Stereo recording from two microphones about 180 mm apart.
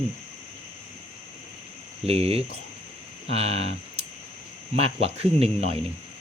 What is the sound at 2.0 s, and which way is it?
Speech, 35° right (ahead or behind).